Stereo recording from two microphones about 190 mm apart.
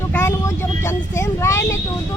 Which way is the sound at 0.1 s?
15° left (ahead or behind).